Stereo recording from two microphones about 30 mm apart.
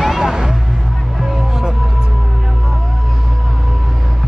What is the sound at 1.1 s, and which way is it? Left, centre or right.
Music, centre.